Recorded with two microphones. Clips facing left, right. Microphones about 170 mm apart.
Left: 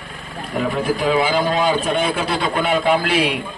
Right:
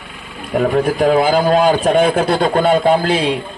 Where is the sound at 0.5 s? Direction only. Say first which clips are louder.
Right 6 dB; 45° right (ahead or behind).